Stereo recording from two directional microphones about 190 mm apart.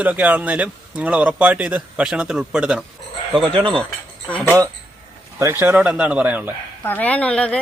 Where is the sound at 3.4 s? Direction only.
25° right (ahead or behind).